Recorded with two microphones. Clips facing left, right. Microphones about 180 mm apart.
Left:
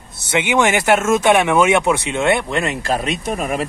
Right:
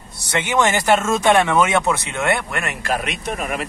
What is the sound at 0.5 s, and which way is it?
Speech, 10° left (ahead or behind).